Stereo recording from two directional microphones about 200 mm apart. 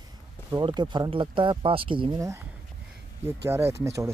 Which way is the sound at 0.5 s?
20° right (ahead or behind).